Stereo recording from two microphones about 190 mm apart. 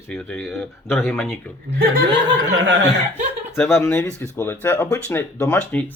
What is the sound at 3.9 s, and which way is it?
Speech, 15° left (ahead or behind).